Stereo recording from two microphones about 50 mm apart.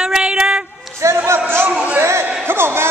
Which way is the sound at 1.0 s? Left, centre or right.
Right.